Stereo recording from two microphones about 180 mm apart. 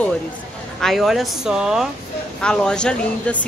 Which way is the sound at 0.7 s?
Centre (ahead or behind).